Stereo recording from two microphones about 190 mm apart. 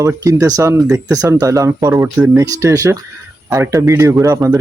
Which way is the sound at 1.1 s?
20° right (ahead or behind).